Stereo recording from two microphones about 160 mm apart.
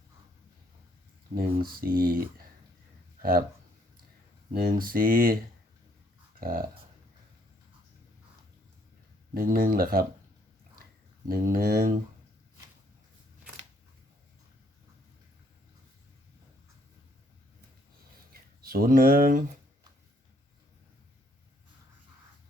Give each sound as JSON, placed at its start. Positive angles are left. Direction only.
{"t": 1.4, "sound": "speech", "side_deg": -65}
{"t": 4.5, "sound": "speech", "side_deg": -60}
{"t": 6.4, "sound": "speech", "side_deg": -65}
{"t": 9.3, "sound": "speech", "side_deg": -65}
{"t": 11.3, "sound": "speech", "side_deg": -60}
{"t": 18.6, "sound": "speech", "side_deg": -70}